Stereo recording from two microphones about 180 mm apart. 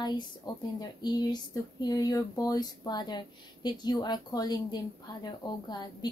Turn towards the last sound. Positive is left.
turn(degrees=25)  # may be behind; listen again after turning